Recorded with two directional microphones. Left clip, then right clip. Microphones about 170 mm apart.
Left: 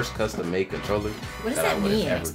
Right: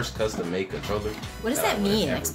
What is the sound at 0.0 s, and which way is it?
Speech, 55° left (ahead or behind).